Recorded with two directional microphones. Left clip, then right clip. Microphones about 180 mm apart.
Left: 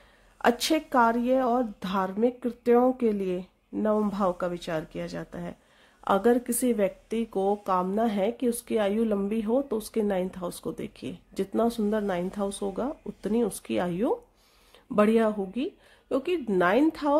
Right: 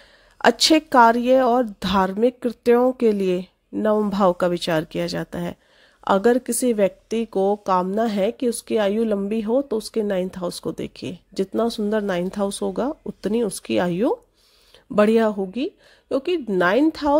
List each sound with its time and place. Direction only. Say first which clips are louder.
0.4 s speech: right 8 dB; 35° right (ahead or behind)